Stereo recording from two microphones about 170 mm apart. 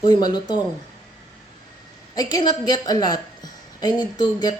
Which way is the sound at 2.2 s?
20° left (ahead or behind).